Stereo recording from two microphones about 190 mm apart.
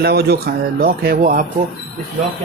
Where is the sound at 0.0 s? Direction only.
55° right (ahead or behind).